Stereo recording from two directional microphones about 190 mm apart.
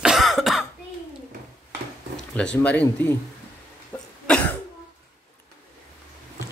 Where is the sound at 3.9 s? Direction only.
10° left (ahead or behind).